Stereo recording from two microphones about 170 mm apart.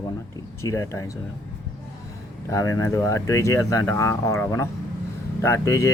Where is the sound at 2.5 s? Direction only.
20° left (ahead or behind).